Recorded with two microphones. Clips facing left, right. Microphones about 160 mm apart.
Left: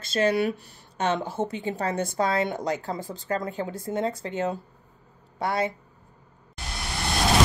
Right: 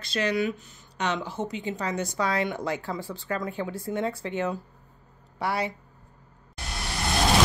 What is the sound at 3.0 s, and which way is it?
Speech, 40° left (ahead or behind).